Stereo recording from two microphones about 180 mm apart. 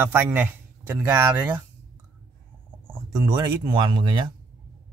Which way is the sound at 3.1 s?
20° right (ahead or behind).